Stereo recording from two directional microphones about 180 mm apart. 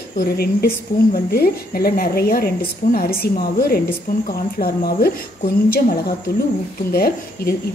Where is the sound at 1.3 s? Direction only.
55° left (ahead or behind).